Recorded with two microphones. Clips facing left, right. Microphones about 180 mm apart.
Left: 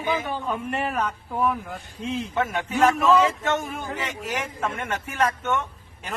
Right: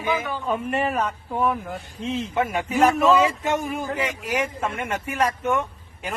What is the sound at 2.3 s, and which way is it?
Speech, 15° right (ahead or behind).